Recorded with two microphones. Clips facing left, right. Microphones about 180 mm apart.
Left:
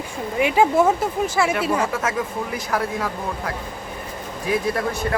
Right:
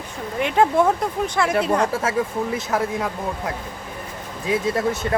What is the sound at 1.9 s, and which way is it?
Speech, 30° right (ahead or behind).